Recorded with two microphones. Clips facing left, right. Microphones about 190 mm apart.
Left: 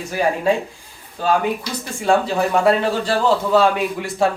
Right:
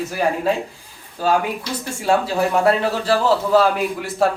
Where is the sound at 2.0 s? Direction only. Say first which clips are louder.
Left 1 dB; 5° right (ahead or behind).